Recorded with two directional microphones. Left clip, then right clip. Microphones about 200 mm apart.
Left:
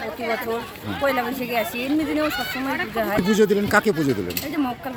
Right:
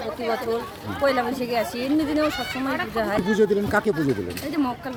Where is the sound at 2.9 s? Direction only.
Centre (ahead or behind).